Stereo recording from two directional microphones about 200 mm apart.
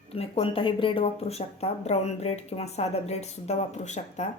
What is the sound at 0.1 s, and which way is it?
Speech, 30° left (ahead or behind).